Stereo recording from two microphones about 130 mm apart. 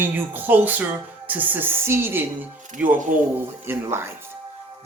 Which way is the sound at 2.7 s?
85° right.